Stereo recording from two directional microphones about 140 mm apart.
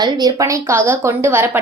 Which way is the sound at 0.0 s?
25° right (ahead or behind).